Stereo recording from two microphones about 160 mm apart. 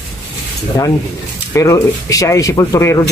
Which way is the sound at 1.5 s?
20° left (ahead or behind).